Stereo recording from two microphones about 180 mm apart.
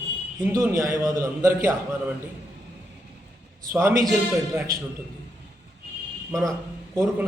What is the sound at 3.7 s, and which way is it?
Speech, 15° right (ahead or behind).